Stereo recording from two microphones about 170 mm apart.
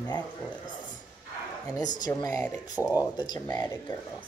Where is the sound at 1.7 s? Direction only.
25° left (ahead or behind).